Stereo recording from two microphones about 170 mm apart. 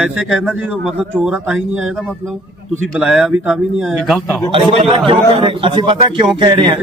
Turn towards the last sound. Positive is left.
turn(degrees=-25)  # may be behind; listen again after turning